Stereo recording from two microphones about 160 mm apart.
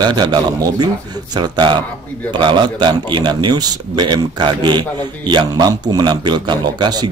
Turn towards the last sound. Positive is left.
turn(degrees=-25)  # may be behind; listen again after turning